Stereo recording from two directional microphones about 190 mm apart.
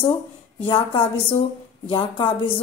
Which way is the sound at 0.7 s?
25° left (ahead or behind).